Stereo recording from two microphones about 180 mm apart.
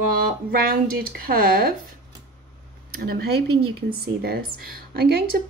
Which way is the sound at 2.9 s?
60° right (ahead or behind).